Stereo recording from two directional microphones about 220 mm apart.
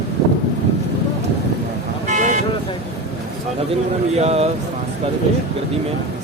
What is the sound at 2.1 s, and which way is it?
Vehicle, 35° right (ahead or behind).